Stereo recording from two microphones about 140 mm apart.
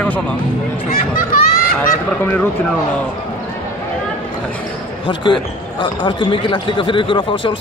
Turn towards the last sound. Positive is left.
turn(degrees=35)  # may be behind; listen again after turning